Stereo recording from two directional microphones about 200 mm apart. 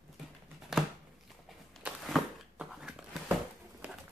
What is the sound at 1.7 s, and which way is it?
Walk, centre (ahead or behind).